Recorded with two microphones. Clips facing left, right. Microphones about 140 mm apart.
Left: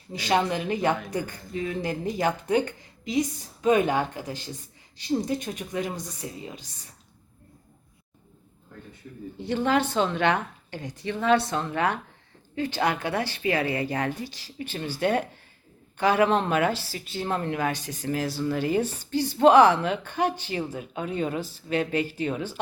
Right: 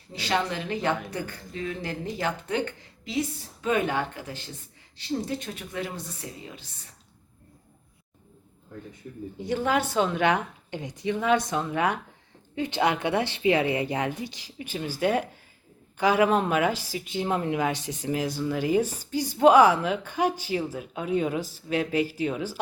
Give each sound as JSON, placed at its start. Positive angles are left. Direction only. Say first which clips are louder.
{"t": 0.1, "sound": "a woman's voice", "louder": "left 3 dB", "side_deg": 15}
{"t": 9.4, "sound": "a woman's voice", "louder": "left 2 dB", "side_deg": -10}
{"t": 12.5, "sound": "a woman's voice", "louder": "right 1 dB", "side_deg": -20}